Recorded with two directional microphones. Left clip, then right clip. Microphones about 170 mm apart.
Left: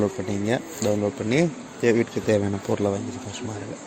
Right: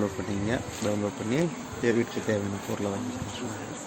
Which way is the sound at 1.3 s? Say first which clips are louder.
Left 6 dB; 55° left (ahead or behind).